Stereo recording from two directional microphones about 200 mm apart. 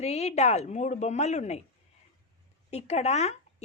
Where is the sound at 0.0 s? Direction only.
35° left (ahead or behind).